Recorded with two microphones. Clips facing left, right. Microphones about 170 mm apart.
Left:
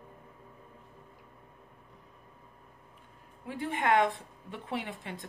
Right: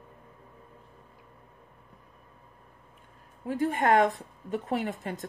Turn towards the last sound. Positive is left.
turn(degrees=-45)  # may be behind; listen again after turning